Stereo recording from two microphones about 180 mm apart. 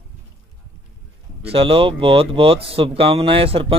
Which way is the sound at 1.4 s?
30° right (ahead or behind).